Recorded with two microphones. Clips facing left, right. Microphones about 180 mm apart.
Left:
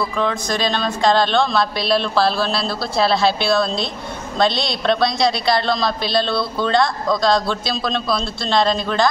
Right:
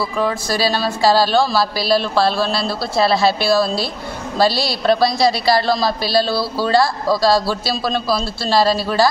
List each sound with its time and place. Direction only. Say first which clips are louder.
0.2 s a woman's voice: right 3 dB; 5° right (ahead or behind)